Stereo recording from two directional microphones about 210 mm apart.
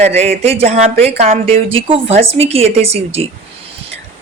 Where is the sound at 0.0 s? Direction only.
30° right (ahead or behind).